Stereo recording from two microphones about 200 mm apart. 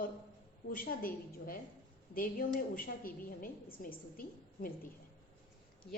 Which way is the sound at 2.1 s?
45° left (ahead or behind).